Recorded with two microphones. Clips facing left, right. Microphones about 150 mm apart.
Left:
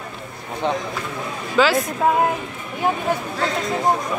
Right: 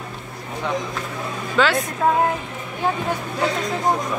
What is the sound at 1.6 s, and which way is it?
Speech, 5° left (ahead or behind).